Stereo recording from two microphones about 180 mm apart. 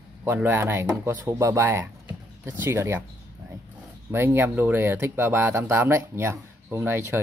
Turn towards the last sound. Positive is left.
turn(degrees=-15)  # may be behind; listen again after turning